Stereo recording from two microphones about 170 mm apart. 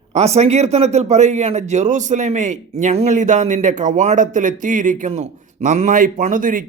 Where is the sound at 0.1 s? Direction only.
40° right (ahead or behind).